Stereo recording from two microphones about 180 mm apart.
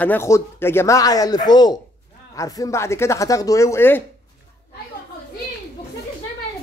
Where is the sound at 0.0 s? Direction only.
10° left (ahead or behind).